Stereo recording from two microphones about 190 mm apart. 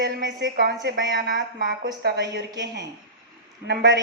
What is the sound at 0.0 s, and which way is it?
Speech, 65° right (ahead or behind).